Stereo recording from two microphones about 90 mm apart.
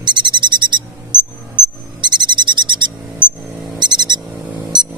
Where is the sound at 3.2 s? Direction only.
60° right (ahead or behind).